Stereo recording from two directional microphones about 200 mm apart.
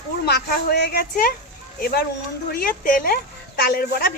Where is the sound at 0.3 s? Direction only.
55° left (ahead or behind).